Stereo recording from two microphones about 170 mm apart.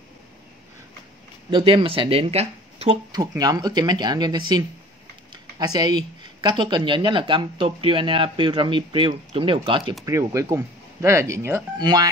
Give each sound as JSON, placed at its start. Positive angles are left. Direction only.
{"t": 1.5, "sound": "speech", "side_deg": -30}
{"t": 3.1, "sound": "speech", "side_deg": -20}
{"t": 10.0, "sound": "speech", "side_deg": -15}